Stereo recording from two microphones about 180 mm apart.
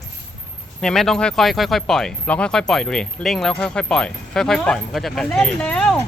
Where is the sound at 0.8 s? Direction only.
Centre (ahead or behind).